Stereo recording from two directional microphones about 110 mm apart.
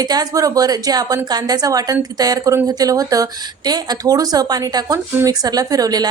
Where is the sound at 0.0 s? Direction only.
35° right (ahead or behind).